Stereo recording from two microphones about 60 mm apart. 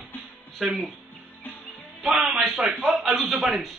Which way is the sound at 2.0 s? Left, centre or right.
Centre.